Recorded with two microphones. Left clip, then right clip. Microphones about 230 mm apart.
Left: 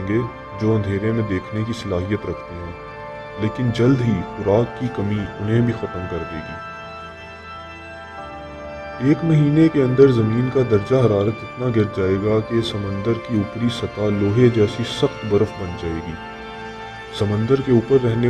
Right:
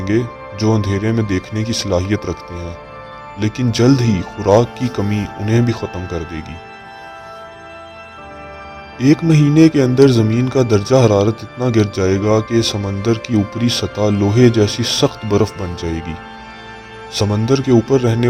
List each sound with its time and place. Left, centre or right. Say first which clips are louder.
0.6 s speech: right 3 dB; right
3.4 s speech: right 4 dB; right
9.0 s speech: right 5 dB; right
17.2 s speech: right 3 dB; right